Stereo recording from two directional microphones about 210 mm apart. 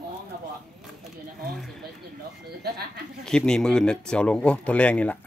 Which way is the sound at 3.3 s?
5° left (ahead or behind).